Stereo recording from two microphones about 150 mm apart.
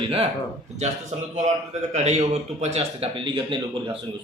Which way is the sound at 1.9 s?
50° right (ahead or behind).